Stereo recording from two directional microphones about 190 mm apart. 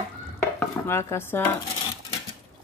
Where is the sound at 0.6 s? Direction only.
10° left (ahead or behind).